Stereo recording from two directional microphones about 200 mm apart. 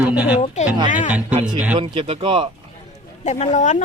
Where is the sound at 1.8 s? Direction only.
25° right (ahead or behind).